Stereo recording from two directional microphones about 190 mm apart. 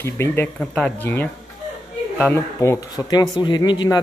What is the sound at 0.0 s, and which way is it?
Speech, 10° left (ahead or behind).